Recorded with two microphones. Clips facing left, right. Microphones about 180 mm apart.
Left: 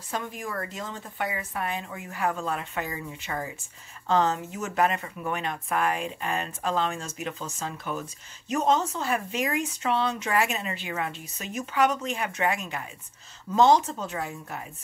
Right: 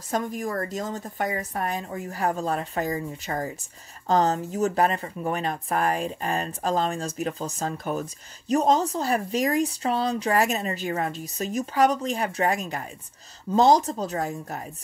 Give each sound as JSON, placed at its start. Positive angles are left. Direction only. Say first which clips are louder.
{"t": 0.1, "sound": "speech", "louder": "right 6 dB", "side_deg": -40}